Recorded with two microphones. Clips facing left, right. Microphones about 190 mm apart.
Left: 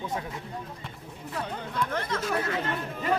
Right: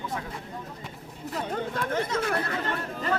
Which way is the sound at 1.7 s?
50° right (ahead or behind).